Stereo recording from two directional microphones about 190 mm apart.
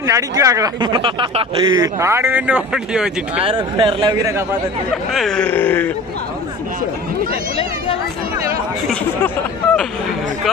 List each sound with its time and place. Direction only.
0.0 s speech: 15° right (ahead or behind)
3.3 s speech: 25° right (ahead or behind)
5.1 s a sound: centre (ahead or behind)